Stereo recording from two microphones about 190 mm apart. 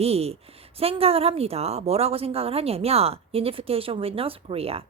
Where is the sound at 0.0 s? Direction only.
30° right (ahead or behind).